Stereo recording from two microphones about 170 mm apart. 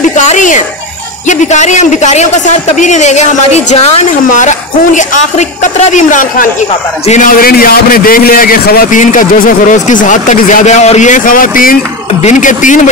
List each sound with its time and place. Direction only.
0.1 s a man's voice: 45° left (ahead or behind)